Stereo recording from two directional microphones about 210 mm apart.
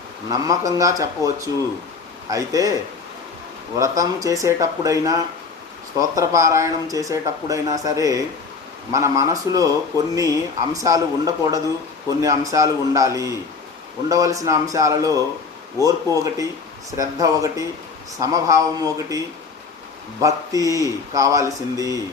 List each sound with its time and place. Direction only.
0.3 s speech: 15° right (ahead or behind)
3.8 s speech: 15° right (ahead or behind)
20.2 s speech: 15° right (ahead or behind)